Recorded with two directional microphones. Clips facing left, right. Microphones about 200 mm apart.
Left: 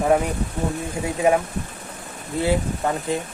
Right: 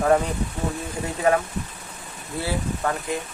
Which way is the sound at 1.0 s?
15° left (ahead or behind).